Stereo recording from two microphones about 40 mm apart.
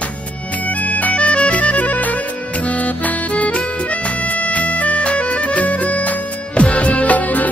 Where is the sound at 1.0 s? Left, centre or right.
Left.